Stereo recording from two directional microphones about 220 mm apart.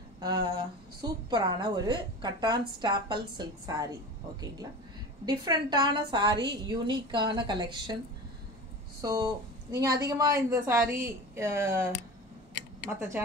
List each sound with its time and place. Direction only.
0.2 s a woman's voice: 20° right (ahead or behind)
9.0 s a woman's voice: 15° right (ahead or behind)